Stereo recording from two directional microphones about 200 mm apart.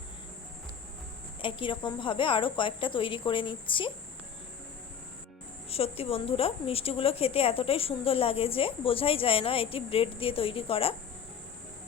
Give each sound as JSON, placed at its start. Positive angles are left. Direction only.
{"t": 1.4, "sound": "a woman's voice", "side_deg": 25}
{"t": 5.7, "sound": "a woman's voice", "side_deg": 30}